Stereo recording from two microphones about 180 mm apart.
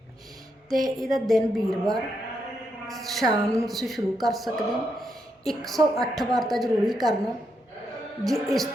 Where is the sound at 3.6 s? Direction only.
Centre (ahead or behind).